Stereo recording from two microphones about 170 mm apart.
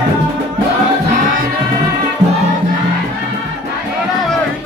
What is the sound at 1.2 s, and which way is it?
Music, 50° right (ahead or behind).